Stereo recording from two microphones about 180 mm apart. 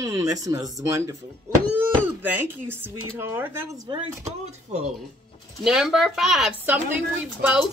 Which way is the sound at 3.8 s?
35° right (ahead or behind).